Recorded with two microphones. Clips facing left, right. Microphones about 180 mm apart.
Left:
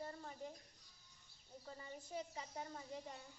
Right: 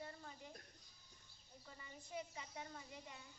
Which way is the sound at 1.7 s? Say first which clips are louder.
Left 3 dB; 35° left (ahead or behind).